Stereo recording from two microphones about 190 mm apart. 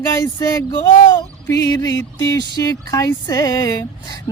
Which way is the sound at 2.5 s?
20° left (ahead or behind).